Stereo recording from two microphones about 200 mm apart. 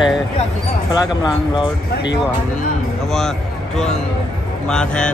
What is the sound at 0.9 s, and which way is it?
Speech, 20° left (ahead or behind).